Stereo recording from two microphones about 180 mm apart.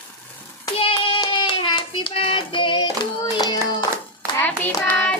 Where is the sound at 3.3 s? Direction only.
25° left (ahead or behind).